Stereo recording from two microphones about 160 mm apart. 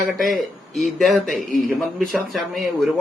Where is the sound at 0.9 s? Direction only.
Centre (ahead or behind).